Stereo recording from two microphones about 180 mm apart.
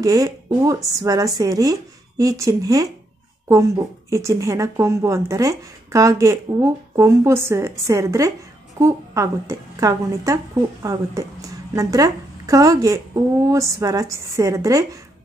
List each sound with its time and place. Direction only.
0.0 s a woman's voice: 20° right (ahead or behind)